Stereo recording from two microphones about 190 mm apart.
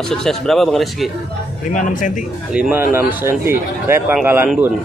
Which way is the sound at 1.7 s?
40° left (ahead or behind).